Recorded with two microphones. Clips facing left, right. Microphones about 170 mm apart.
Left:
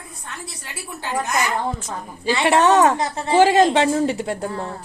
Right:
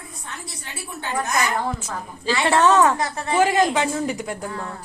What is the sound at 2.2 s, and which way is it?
A woman's voice, 15° left (ahead or behind).